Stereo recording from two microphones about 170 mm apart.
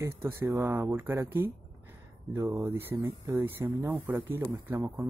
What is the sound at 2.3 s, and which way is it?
Speech, 15° right (ahead or behind).